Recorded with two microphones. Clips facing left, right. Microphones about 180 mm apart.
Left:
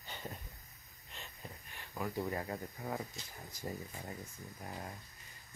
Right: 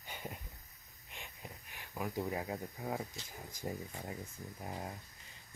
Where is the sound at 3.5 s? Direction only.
15° right (ahead or behind).